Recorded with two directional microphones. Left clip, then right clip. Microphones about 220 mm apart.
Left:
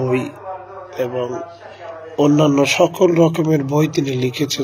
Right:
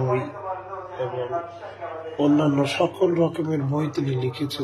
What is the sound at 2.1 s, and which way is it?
Speech, 45° left (ahead or behind).